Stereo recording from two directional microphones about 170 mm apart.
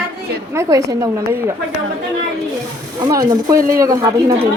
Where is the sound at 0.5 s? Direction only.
15° right (ahead or behind).